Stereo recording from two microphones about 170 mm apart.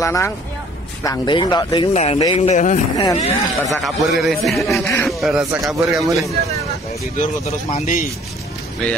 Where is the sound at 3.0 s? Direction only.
20° left (ahead or behind).